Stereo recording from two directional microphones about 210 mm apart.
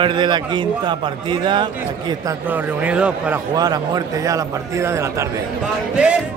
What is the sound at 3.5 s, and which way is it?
A man's voice, 20° right (ahead or behind).